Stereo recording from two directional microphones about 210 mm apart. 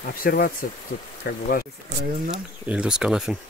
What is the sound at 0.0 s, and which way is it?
Speech, 45° left (ahead or behind).